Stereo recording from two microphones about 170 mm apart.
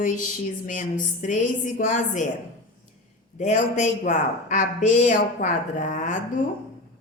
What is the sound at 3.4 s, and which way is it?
A man's voice, 45° left (ahead or behind).